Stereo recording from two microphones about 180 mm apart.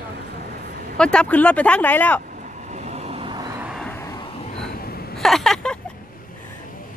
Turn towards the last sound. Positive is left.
turn(degrees=5)  # may be behind; listen again after turning